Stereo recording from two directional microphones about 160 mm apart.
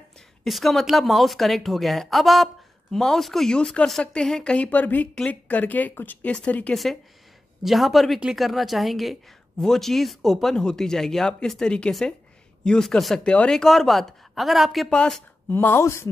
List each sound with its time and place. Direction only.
0.4 s speech: centre (ahead or behind); by 16.1 s 15° left (ahead or behind)